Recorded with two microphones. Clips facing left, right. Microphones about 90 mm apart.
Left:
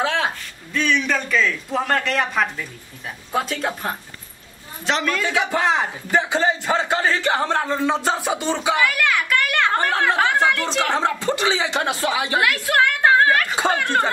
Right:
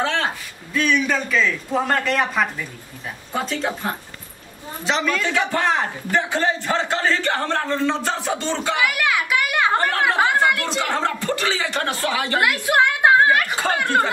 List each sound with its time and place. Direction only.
0.0 s a sound: 5° left (ahead or behind)
0.7 s speech: 5° right (ahead or behind)
5.3 s a man's voice: 15° left (ahead or behind)
8.7 s a woman's voice: 10° right (ahead or behind)
10.8 s a man's voice: 15° left (ahead or behind)
12.4 s a woman's voice: 10° right (ahead or behind)